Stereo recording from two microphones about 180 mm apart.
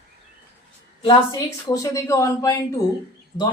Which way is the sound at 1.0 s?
20° left (ahead or behind).